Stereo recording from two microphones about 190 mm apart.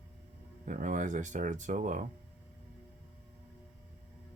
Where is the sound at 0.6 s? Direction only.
40° right (ahead or behind).